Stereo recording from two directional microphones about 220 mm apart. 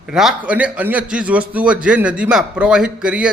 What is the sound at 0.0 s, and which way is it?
A man's voice, centre (ahead or behind).